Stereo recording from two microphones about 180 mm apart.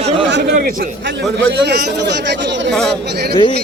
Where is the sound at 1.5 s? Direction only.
65° right (ahead or behind).